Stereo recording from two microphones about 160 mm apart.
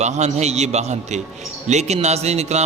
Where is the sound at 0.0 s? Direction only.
45° right (ahead or behind).